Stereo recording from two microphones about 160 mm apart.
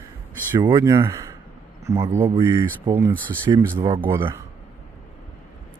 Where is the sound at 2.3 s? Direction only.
25° right (ahead or behind).